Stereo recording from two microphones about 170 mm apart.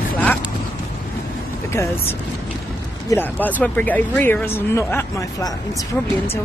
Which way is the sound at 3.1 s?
10° left (ahead or behind).